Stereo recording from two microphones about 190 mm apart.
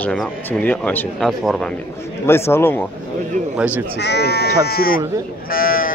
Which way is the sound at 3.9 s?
60° left (ahead or behind).